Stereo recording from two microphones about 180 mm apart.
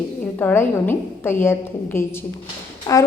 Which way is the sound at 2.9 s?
25° left (ahead or behind).